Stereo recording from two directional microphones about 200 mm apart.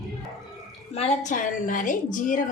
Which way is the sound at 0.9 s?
35° left (ahead or behind).